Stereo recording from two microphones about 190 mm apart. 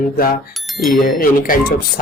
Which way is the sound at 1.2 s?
50° left (ahead or behind).